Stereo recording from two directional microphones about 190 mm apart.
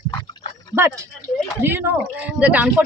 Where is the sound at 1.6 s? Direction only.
10° right (ahead or behind).